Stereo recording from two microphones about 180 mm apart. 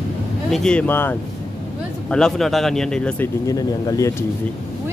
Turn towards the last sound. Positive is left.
turn(degrees=20)  # may be behind; listen again after turning